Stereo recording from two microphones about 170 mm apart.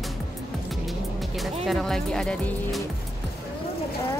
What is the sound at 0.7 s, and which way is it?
Music, centre (ahead or behind).